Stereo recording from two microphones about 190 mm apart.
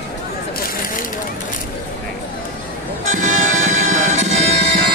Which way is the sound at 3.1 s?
40° right (ahead or behind).